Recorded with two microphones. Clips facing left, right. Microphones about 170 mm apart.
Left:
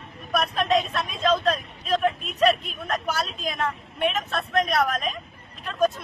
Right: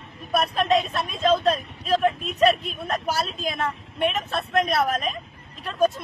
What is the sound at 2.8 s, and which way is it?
Speech, 30° right (ahead or behind).